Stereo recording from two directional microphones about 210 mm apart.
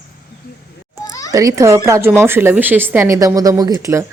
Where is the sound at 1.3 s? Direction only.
15° right (ahead or behind).